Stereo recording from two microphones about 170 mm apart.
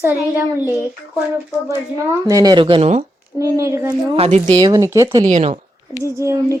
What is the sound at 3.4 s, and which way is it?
Speech, 15° right (ahead or behind).